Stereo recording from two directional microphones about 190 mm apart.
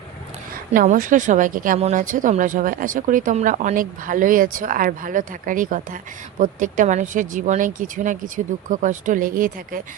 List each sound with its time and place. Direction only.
0.5 s a woman's voice: 45° right (ahead or behind)